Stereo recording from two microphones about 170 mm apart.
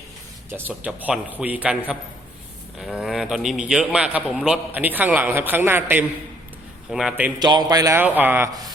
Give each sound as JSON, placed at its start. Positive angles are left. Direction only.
{"t": 0.7, "sound": "a man's voice", "side_deg": -5}
{"t": 7.3, "sound": "a man's voice", "side_deg": -25}